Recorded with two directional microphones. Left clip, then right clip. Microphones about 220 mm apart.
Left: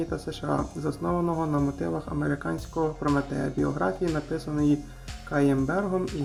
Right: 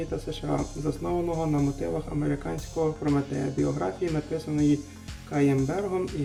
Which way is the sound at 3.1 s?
Centre (ahead or behind).